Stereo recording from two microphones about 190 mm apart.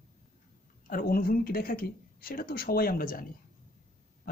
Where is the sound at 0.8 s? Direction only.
50° left (ahead or behind).